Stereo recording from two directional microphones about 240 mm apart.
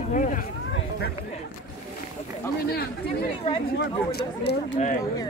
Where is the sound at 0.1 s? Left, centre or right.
Left.